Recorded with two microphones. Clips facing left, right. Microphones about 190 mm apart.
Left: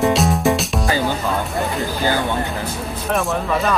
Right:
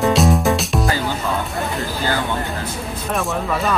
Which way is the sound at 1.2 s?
Centre (ahead or behind).